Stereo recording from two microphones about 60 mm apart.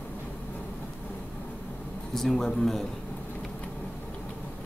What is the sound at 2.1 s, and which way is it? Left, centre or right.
Speech, centre.